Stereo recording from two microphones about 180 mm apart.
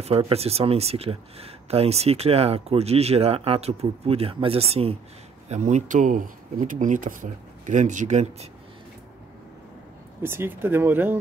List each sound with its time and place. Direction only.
0.0 s speech: 30° right (ahead or behind)
10.2 s speech: 10° right (ahead or behind)